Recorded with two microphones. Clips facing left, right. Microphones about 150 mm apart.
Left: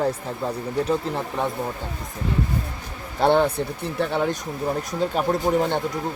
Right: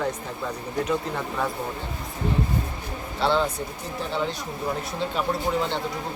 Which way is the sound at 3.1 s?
55° left (ahead or behind).